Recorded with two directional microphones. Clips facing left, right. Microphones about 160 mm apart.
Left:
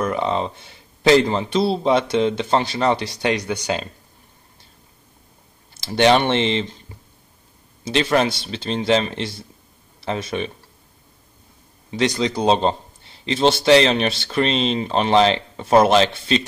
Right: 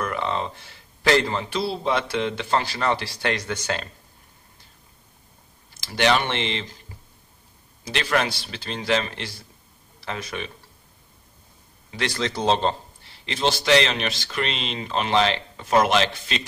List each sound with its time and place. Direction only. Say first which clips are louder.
0.0 s a man's voice: left 5 dB; 20° left (ahead or behind)
5.8 s a man's voice: left 6 dB; 25° left (ahead or behind)
7.8 s a man's voice: left 6 dB; 25° left (ahead or behind)
11.9 s a man's voice: left 7 dB; 20° left (ahead or behind)